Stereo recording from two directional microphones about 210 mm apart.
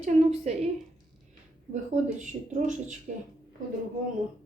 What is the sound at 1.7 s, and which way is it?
A woman's voice, 35° right (ahead or behind).